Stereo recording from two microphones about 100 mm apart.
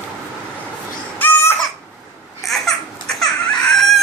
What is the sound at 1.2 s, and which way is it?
Baby cry, 25° left (ahead or behind).